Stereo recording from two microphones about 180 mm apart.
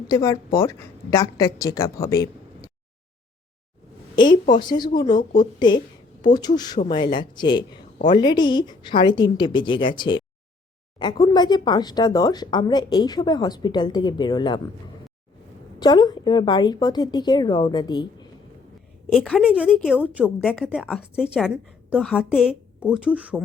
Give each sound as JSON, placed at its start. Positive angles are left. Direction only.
{"t": 0.1, "sound": "speech", "side_deg": 20}
{"t": 4.5, "sound": "speech", "side_deg": 25}
{"t": 15.8, "sound": "speech", "side_deg": 20}
{"t": 19.1, "sound": "a woman's voice", "side_deg": 0}